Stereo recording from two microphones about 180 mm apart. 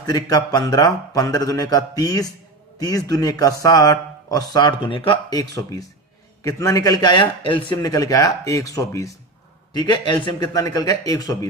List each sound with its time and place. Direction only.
0.0 s a man's voice: 20° left (ahead or behind)